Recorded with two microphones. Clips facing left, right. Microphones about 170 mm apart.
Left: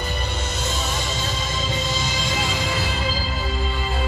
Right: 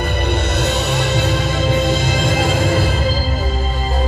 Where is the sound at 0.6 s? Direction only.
65° right (ahead or behind).